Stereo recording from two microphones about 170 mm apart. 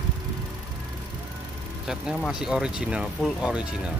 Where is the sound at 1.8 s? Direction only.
5° right (ahead or behind).